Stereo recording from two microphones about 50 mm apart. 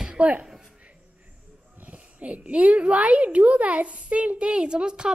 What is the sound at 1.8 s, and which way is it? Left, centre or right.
A child's voice, right.